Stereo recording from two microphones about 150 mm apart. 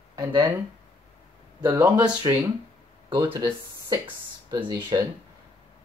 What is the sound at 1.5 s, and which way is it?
Speech, 10° right (ahead or behind).